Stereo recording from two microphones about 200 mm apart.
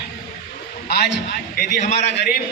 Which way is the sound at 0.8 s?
55° left (ahead or behind).